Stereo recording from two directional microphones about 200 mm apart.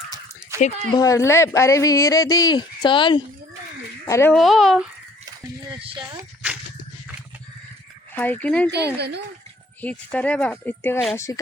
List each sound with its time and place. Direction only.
0.9 s speech: 15° left (ahead or behind)
4.4 s speech: centre (ahead or behind)
5.8 s speech: 25° right (ahead or behind)
8.1 s speech: 10° left (ahead or behind)
8.7 s a woman's voice: 55° right (ahead or behind)
9.8 s speech: 5° left (ahead or behind)